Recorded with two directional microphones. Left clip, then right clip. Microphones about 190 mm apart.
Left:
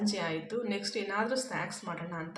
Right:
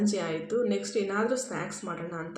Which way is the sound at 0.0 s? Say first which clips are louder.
Right 3 dB; 20° right (ahead or behind).